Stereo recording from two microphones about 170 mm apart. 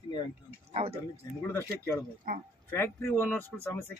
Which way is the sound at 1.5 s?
15° left (ahead or behind).